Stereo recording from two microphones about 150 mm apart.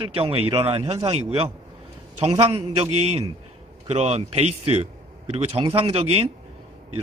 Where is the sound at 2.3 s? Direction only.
40° right (ahead or behind).